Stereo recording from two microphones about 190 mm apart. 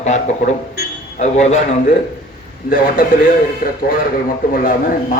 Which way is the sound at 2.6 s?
45° left (ahead or behind).